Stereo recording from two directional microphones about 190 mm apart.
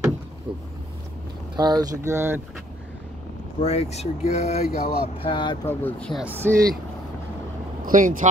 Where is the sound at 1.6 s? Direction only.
20° right (ahead or behind).